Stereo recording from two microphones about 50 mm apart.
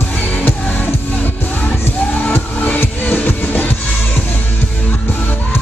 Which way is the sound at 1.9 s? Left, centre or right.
Left.